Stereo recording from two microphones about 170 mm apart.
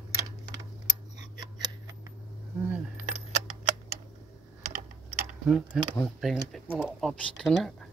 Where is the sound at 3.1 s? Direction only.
40° right (ahead or behind).